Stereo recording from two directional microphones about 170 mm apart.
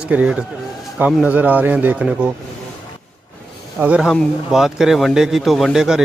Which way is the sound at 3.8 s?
5° right (ahead or behind).